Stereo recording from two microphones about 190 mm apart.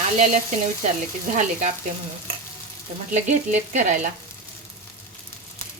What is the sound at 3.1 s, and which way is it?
Speech, 40° right (ahead or behind).